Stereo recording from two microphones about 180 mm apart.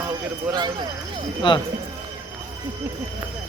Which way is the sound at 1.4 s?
25° left (ahead or behind).